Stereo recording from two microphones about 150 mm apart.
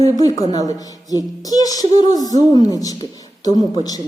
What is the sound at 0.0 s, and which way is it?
A woman's voice, 25° left (ahead or behind).